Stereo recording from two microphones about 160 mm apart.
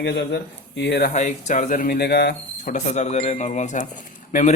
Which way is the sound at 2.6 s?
45° left (ahead or behind).